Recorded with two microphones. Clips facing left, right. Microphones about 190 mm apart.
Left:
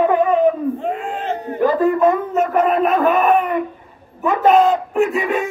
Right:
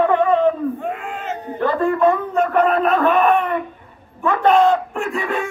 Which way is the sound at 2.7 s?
15° left (ahead or behind).